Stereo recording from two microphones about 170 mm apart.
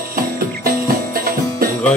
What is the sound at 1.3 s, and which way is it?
Music, 60° right (ahead or behind).